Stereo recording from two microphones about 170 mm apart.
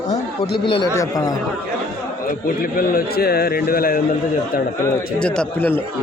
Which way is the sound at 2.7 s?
60° left (ahead or behind).